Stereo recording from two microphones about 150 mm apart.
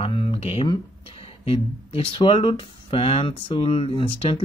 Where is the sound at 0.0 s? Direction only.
35° left (ahead or behind).